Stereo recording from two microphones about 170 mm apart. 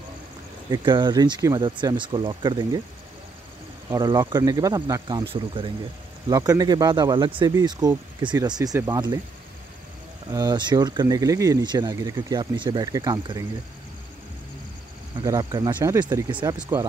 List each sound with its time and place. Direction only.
0.7 s speech: 25° right (ahead or behind)
3.9 s speech: 20° right (ahead or behind)
5.3 s speech: 35° right (ahead or behind)
6.2 s speech: 20° right (ahead or behind)
10.3 s speech: 20° right (ahead or behind)
15.2 s speech: 20° right (ahead or behind)